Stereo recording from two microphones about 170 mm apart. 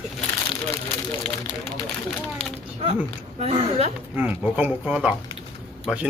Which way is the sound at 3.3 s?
40° right (ahead or behind).